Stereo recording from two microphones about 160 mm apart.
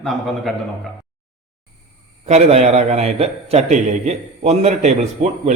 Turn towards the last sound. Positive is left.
turn(degrees=-45)  # may be behind; listen again after turning